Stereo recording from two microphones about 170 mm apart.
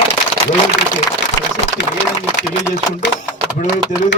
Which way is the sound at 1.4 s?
20° left (ahead or behind).